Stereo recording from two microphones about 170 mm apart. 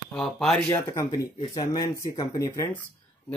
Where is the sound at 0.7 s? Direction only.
15° left (ahead or behind).